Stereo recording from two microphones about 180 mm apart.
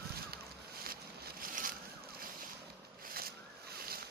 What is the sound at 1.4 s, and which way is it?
Boat, 50° right (ahead or behind).